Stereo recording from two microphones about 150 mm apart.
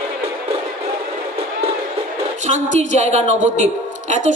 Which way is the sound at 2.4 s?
55° right (ahead or behind).